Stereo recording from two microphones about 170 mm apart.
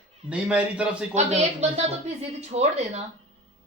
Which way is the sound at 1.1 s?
45° right (ahead or behind).